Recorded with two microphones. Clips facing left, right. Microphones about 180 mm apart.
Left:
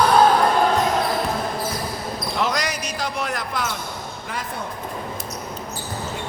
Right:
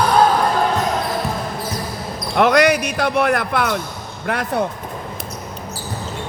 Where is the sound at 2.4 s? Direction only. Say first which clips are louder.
Right 12 dB; 65° right (ahead or behind).